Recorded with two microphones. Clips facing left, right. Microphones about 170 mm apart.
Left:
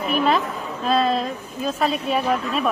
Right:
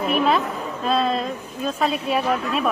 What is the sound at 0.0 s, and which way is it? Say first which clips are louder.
A woman's voice: even; centre (ahead or behind).